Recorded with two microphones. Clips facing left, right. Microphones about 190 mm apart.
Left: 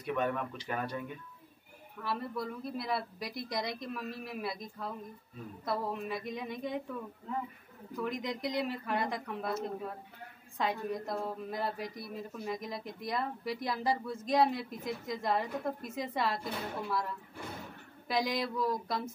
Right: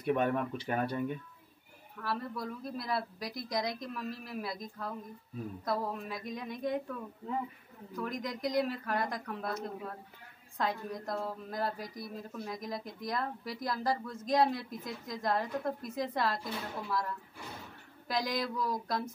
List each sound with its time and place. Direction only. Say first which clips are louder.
0.1 s speech: right 3 dB; 30° right (ahead or behind)
2.0 s speech: left 1 dB; 5° left (ahead or behind)
7.9 s speech: left 1 dB; 5° left (ahead or behind)
18.0 s speech: left 1 dB; 5° left (ahead or behind)